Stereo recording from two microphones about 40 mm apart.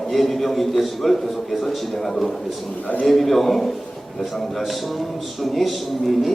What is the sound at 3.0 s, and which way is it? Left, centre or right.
Speech, centre.